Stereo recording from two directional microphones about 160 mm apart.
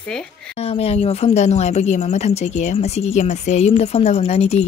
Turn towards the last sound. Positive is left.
turn(degrees=40)  # may be behind; listen again after turning